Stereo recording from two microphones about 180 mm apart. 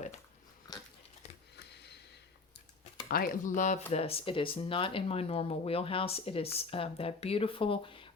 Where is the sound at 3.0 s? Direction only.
55° left (ahead or behind).